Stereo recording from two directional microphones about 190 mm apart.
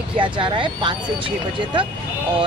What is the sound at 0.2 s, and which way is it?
Speech, 25° right (ahead or behind).